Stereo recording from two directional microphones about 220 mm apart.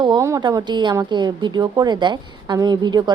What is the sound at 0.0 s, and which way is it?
A woman's voice, 15° right (ahead or behind).